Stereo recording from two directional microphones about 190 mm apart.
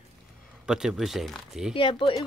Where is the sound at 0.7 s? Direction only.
5° right (ahead or behind).